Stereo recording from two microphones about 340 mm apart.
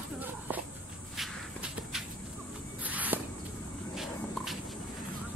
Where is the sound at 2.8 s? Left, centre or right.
Centre.